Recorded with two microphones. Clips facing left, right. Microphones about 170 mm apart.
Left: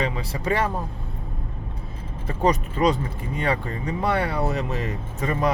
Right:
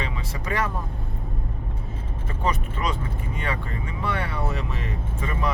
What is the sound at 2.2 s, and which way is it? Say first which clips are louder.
Speech: left 6 dB; 40° left (ahead or behind).